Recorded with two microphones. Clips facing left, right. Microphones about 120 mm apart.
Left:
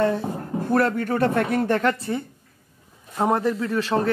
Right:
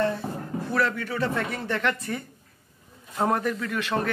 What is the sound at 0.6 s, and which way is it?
Speech, 50° left (ahead or behind).